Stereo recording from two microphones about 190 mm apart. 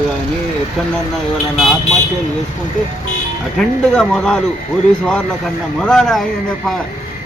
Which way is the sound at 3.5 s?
5° left (ahead or behind).